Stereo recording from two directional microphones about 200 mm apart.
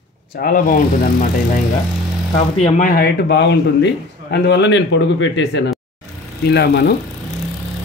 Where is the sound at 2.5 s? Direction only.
35° left (ahead or behind).